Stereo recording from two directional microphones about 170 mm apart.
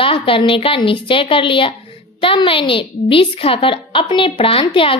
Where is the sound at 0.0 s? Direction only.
30° left (ahead or behind).